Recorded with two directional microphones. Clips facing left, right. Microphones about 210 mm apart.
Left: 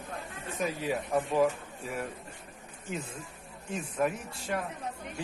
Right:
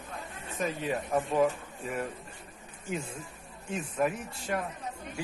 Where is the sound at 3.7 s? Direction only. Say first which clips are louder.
Right 1 dB; 5° right (ahead or behind).